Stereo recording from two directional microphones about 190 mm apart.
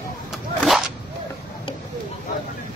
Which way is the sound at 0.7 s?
Centre (ahead or behind).